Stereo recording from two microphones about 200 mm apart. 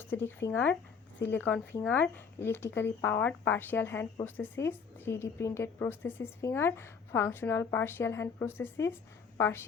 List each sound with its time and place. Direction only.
0.0 s speech: 10° left (ahead or behind)